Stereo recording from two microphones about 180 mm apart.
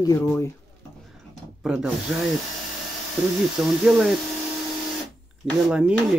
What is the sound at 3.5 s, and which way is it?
Speech, centre (ahead or behind).